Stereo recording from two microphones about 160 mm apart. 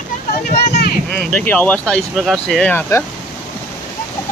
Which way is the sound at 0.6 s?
90° left.